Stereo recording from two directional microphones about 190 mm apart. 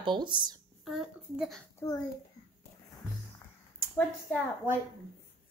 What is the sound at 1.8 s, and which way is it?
Speech, 15° left (ahead or behind).